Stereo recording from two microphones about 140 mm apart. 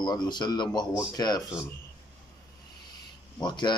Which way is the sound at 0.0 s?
30° left (ahead or behind).